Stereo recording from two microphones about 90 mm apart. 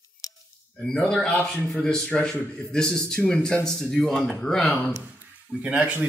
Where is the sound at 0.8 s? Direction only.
10° left (ahead or behind).